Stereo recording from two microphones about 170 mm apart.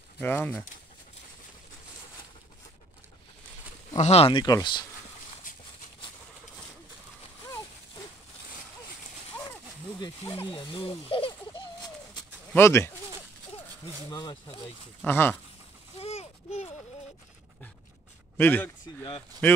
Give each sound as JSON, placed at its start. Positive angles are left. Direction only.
{"t": 0.2, "sound": "speech", "side_deg": 10}
{"t": 3.9, "sound": "speech", "side_deg": 40}
{"t": 4.3, "sound": "speech", "side_deg": 25}
{"t": 9.9, "sound": "speech", "side_deg": 25}
{"t": 12.5, "sound": "speech", "side_deg": 15}
{"t": 14.1, "sound": "speech", "side_deg": 30}
{"t": 15.0, "sound": "speech", "side_deg": 10}
{"t": 16.0, "sound": "a sound", "side_deg": 35}
{"t": 18.4, "sound": "speech", "side_deg": 10}